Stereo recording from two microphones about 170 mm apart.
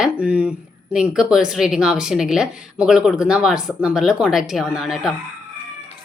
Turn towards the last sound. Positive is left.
turn(degrees=-5)  # may be behind; listen again after turning